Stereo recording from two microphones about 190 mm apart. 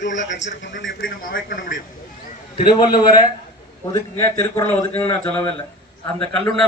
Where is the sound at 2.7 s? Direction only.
25° left (ahead or behind).